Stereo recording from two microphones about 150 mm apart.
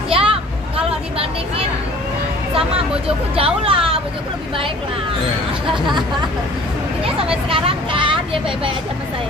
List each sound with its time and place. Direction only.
0.1 s a sound: 35° right (ahead or behind)
3.3 s speech: 40° right (ahead or behind)
7.4 s speech: 35° right (ahead or behind)